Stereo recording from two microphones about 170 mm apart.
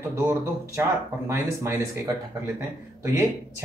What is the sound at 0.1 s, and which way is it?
Speech, 15° right (ahead or behind).